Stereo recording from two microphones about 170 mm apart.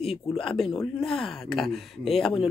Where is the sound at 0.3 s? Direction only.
Centre (ahead or behind).